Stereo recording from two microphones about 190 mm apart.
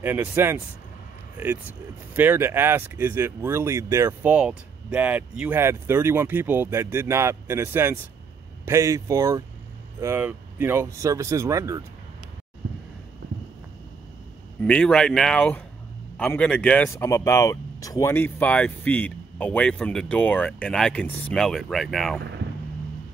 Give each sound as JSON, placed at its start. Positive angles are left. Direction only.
{"t": 0.0, "sound": "speech", "side_deg": -10}
{"t": 2.1, "sound": "speech", "side_deg": -10}
{"t": 14.6, "sound": "speech", "side_deg": 5}